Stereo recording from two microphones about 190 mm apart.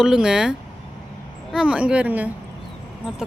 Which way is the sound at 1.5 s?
5° right (ahead or behind).